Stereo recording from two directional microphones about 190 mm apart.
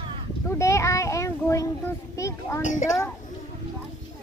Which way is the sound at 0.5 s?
15° left (ahead or behind).